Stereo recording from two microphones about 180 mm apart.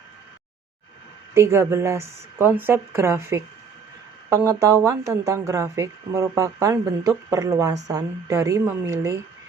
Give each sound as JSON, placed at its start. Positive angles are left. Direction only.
{"t": 1.3, "sound": "speech", "side_deg": -15}
{"t": 4.9, "sound": "speech", "side_deg": -15}